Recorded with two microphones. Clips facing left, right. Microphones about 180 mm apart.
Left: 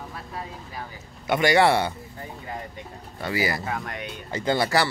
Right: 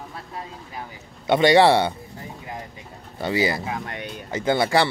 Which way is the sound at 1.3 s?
25° right (ahead or behind).